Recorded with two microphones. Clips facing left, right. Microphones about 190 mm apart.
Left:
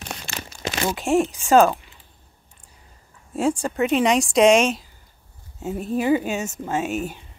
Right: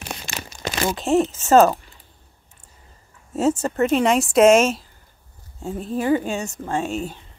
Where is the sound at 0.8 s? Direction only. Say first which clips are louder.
Right 1 dB; centre (ahead or behind).